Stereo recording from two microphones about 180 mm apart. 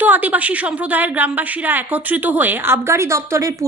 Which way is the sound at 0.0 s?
10° right (ahead or behind).